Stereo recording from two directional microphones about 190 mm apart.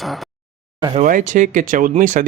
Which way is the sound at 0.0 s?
Centre (ahead or behind).